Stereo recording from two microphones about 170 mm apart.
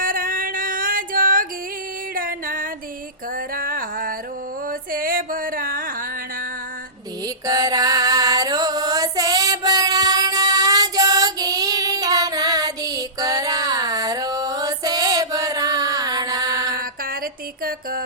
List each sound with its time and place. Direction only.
0.0 s music: 55° right (ahead or behind)
7.4 s music: 20° right (ahead or behind)
17.6 s music: 60° right (ahead or behind)